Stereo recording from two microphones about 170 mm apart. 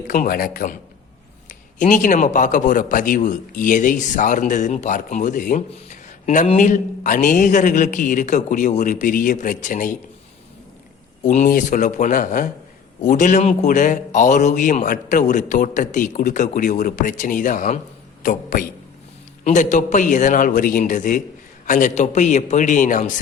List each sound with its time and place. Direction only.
0.1 s a man's voice: 55° left (ahead or behind)
11.2 s a man's voice: 45° left (ahead or behind)